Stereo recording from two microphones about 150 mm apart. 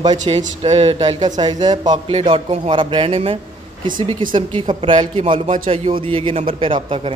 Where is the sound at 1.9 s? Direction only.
40° right (ahead or behind).